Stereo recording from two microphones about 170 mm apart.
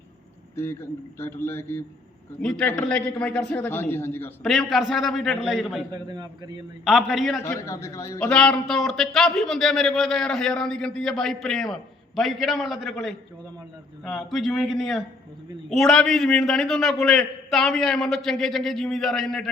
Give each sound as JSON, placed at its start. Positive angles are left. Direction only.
{"t": 0.5, "sound": "a man's voice", "side_deg": 15}
{"t": 4.4, "sound": "a man's voice", "side_deg": 0}
{"t": 5.9, "sound": "a man's voice", "side_deg": -25}
{"t": 6.8, "sound": "a man's voice", "side_deg": -5}
{"t": 7.4, "sound": "speech", "side_deg": 15}
{"t": 8.2, "sound": "a man's voice", "side_deg": 5}